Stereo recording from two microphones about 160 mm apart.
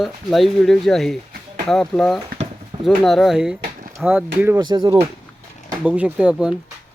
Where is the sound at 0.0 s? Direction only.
Centre (ahead or behind).